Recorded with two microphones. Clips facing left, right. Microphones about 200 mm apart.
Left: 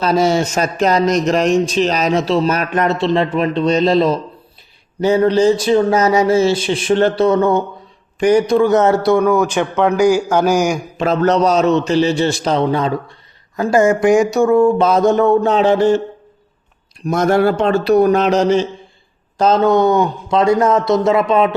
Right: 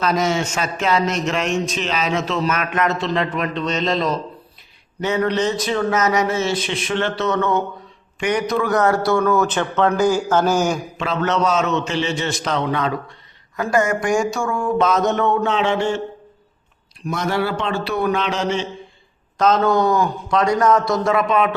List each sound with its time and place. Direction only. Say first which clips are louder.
0.0 s a man's voice: left 5 dB; 30° left (ahead or behind); by 10.8 s 10° left (ahead or behind)
10.9 s a man's voice: left 7 dB; 40° left (ahead or behind)
17.1 s a man's voice: left 8 dB; 45° left (ahead or behind)
19.4 s a man's voice: left 4 dB; 30° left (ahead or behind)